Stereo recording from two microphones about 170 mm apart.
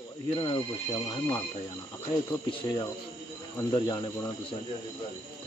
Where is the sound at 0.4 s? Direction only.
25° left (ahead or behind).